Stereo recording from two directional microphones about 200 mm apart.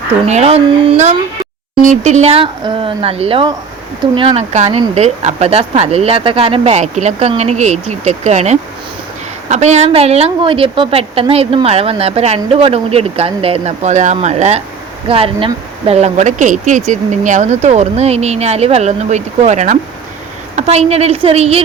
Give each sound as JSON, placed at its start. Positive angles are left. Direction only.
{"t": 0.3, "sound": "a woman's voice", "side_deg": -35}